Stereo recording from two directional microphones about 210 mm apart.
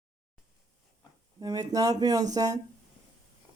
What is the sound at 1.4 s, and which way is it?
Speech, 20° right (ahead or behind).